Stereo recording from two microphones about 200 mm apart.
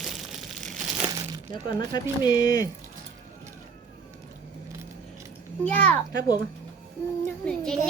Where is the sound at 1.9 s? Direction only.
20° left (ahead or behind).